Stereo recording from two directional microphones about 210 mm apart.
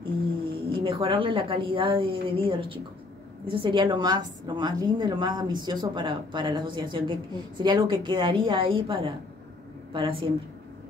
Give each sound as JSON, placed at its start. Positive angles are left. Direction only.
{"t": 0.7, "sound": "a woman's voice", "side_deg": -25}